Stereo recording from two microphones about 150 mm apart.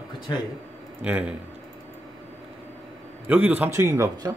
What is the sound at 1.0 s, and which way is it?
Speech, 10° right (ahead or behind).